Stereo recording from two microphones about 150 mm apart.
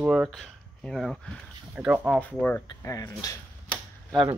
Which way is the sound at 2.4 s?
15° left (ahead or behind).